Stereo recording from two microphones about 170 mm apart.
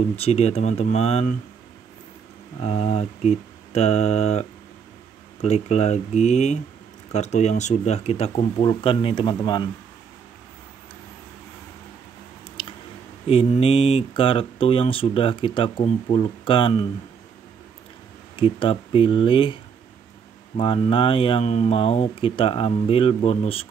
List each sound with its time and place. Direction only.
0.1 s speech: 35° left (ahead or behind)
2.6 s speech: 40° left (ahead or behind)
13.3 s speech: 35° left (ahead or behind)
18.3 s speech: 30° left (ahead or behind)